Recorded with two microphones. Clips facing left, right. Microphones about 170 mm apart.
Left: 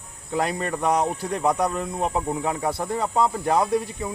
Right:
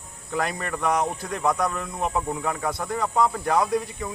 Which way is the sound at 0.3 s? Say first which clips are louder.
Left 3 dB; 25° left (ahead or behind).